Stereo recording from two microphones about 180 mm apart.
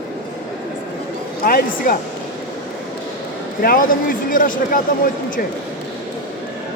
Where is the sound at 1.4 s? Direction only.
55° left (ahead or behind).